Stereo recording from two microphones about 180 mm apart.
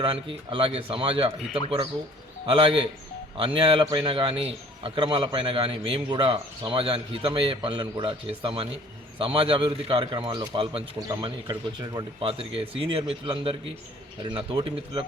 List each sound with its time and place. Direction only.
0.0 s a man's voice: 30° right (ahead or behind)
2.5 s a man's voice: 30° right (ahead or behind)